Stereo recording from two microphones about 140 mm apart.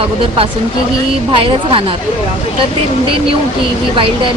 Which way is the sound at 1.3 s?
40° right (ahead or behind).